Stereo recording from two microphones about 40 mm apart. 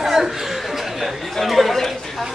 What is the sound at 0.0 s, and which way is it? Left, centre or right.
Chuckle, centre.